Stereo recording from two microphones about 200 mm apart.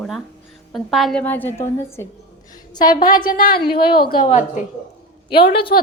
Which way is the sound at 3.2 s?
45° left (ahead or behind).